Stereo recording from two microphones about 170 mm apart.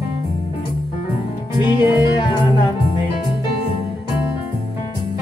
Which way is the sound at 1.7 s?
25° left (ahead or behind).